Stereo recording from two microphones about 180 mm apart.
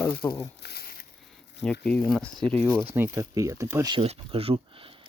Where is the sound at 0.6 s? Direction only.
60° left (ahead or behind).